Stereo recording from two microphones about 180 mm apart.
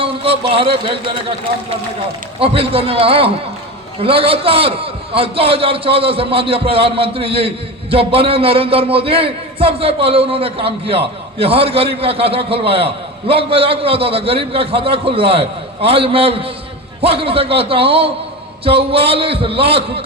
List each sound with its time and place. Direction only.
0.0 s a man's voice: 30° right (ahead or behind)
2.4 s a man's voice: 30° right (ahead or behind)